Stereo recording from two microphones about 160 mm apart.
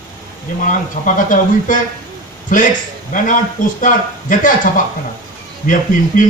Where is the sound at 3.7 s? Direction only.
55° left (ahead or behind).